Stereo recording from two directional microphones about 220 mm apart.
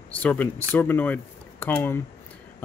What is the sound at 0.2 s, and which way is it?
Speech, 5° left (ahead or behind).